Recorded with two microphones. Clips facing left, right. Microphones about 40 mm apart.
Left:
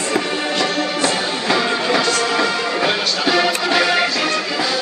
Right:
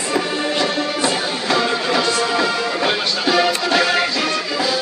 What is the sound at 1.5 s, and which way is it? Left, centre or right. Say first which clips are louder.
Music: left 1 dB; centre.